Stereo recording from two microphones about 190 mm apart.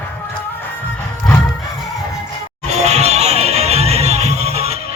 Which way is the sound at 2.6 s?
35° right (ahead or behind).